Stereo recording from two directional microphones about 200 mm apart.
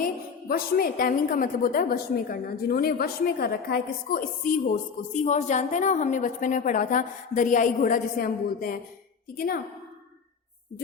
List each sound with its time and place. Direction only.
0.0 s a woman's voice: 45° left (ahead or behind)